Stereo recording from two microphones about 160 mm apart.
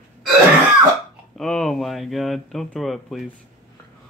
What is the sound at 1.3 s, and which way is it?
Speech, 5° left (ahead or behind).